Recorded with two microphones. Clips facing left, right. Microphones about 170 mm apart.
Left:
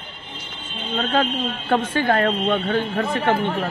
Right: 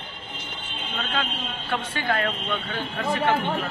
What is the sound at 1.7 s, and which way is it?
A man's voice, 45° left (ahead or behind).